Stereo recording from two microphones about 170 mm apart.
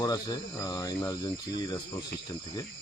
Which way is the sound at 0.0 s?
25° left (ahead or behind).